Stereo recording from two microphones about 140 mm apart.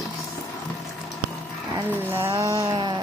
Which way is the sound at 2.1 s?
20° right (ahead or behind).